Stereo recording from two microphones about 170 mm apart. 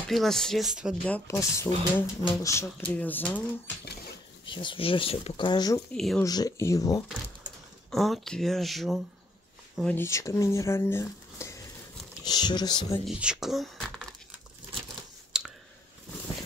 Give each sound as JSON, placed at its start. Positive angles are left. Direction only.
{"t": 0.1, "sound": "speech", "side_deg": 0}
{"t": 1.0, "sound": "speech", "side_deg": 10}
{"t": 4.5, "sound": "speech", "side_deg": 30}
{"t": 5.9, "sound": "speech", "side_deg": 0}
{"t": 6.2, "sound": "speech", "side_deg": 20}
{"t": 7.9, "sound": "speech", "side_deg": 0}
{"t": 9.8, "sound": "speech", "side_deg": 15}
{"t": 13.0, "sound": "speech", "side_deg": -5}
{"t": 15.3, "sound": "clicking", "side_deg": -5}